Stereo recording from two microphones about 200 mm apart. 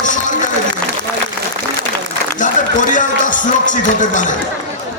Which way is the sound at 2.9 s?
40° left (ahead or behind).